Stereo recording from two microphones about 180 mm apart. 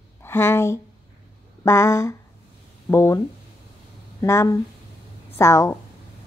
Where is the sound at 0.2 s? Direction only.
15° left (ahead or behind).